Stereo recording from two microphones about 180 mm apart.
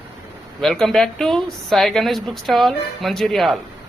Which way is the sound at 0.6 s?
Centre (ahead or behind).